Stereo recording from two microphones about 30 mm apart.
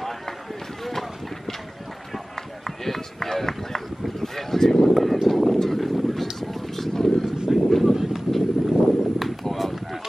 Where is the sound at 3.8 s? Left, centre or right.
Centre.